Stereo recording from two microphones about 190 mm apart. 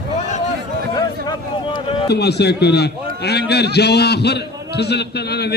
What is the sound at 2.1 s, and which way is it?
A man's voice, 60° left (ahead or behind).